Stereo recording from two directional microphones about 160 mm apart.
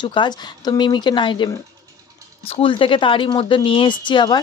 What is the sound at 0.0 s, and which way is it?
Speech, 30° left (ahead or behind).